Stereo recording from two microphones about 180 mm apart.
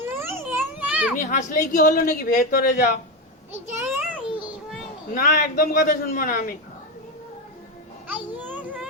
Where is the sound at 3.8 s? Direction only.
10° right (ahead or behind).